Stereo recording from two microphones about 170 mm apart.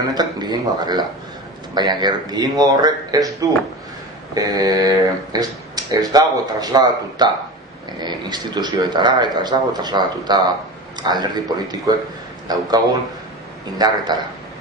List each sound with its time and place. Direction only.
0.0 s speech: 25° right (ahead or behind)
14.1 s speech: 25° right (ahead or behind)